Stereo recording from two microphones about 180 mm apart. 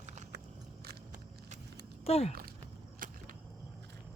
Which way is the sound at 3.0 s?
50° right (ahead or behind).